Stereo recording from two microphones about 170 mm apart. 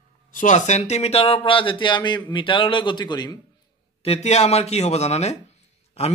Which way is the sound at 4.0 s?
40° left (ahead or behind).